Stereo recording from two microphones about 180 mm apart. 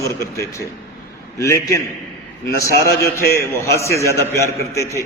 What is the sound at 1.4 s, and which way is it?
Speech, 15° left (ahead or behind).